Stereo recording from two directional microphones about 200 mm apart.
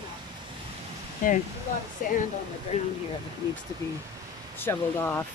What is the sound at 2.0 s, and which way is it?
Speech, 45° left (ahead or behind).